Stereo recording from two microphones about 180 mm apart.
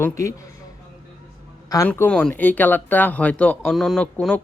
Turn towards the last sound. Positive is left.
turn(degrees=5)  # may be behind; listen again after turning